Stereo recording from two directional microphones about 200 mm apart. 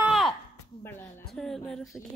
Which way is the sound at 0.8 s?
10° left (ahead or behind).